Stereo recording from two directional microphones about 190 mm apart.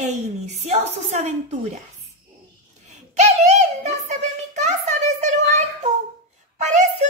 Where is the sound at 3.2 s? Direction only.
35° right (ahead or behind).